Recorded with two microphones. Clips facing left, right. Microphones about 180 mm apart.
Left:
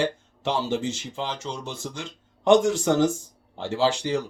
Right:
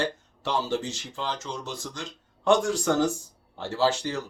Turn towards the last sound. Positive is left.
turn(degrees=15)  # may be behind; listen again after turning